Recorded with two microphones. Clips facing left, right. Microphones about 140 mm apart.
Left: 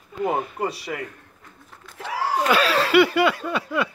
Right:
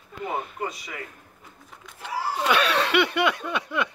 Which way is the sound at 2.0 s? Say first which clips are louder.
Left 3 dB; 90° left.